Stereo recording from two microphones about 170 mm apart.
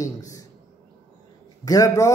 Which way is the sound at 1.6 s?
20° left (ahead or behind).